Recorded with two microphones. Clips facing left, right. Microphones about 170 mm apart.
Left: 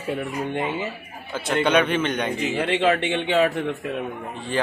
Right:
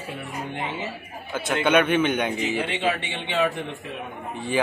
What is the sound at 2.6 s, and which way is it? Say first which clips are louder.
Speech: left 6 dB; 65° left (ahead or behind).